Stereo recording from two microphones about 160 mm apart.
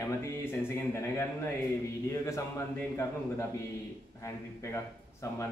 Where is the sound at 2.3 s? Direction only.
20° left (ahead or behind).